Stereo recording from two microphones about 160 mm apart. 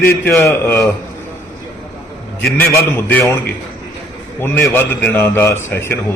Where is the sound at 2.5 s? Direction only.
15° left (ahead or behind).